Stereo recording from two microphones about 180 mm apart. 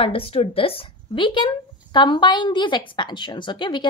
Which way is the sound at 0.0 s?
30° left (ahead or behind).